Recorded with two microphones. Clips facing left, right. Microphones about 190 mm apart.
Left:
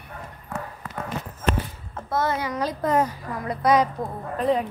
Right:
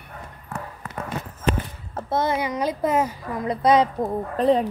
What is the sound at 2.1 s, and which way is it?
Speech, 15° right (ahead or behind).